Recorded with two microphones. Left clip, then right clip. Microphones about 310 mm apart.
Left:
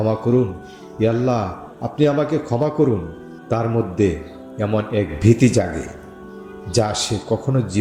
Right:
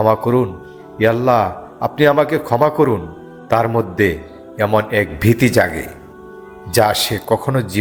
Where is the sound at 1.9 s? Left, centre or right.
Right.